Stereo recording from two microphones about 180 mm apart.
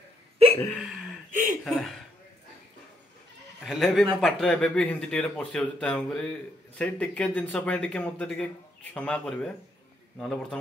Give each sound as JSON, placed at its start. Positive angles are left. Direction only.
{"t": 0.7, "sound": "hiccup", "side_deg": -5}
{"t": 1.3, "sound": "chuckle", "side_deg": -45}
{"t": 1.6, "sound": "speech", "side_deg": 0}
{"t": 3.6, "sound": "speech", "side_deg": 0}